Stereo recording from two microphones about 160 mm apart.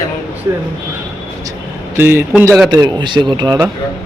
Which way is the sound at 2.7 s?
25° right (ahead or behind).